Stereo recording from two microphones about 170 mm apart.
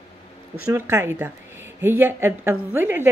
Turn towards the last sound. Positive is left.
turn(degrees=-15)  # may be behind; listen again after turning